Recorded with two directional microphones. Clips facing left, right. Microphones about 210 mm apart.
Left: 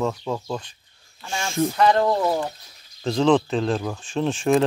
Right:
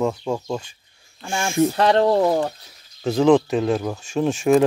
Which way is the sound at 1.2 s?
50° right (ahead or behind).